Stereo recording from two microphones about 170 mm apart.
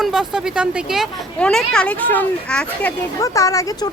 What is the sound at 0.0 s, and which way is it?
Speech, 5° right (ahead or behind).